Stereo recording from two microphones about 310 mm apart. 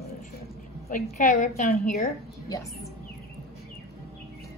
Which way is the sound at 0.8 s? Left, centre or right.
Left.